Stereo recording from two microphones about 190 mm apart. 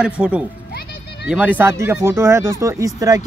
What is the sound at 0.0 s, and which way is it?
A man's voice, 5° right (ahead or behind).